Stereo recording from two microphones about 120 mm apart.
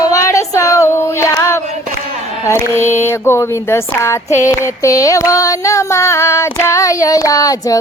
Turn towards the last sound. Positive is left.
turn(degrees=30)  # may be behind; listen again after turning